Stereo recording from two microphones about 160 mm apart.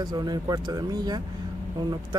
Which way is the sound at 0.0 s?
25° right (ahead or behind).